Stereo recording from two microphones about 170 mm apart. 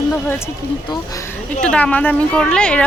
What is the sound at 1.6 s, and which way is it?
Speech, 5° left (ahead or behind).